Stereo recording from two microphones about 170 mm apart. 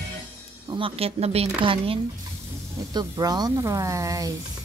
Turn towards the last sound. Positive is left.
turn(degrees=-20)  # may be behind; listen again after turning